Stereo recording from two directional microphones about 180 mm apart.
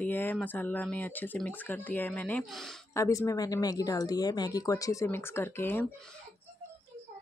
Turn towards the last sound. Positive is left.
turn(degrees=5)  # may be behind; listen again after turning